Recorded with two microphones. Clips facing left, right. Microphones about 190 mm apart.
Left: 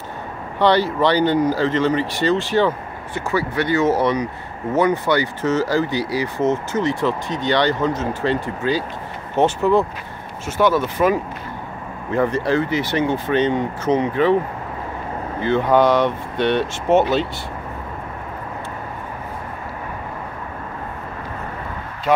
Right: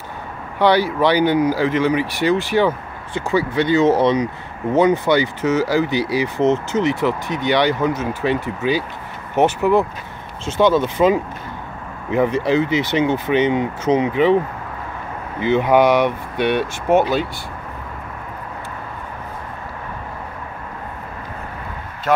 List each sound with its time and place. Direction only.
0.6 s speech: 10° right (ahead or behind)
15.4 s speech: 15° right (ahead or behind)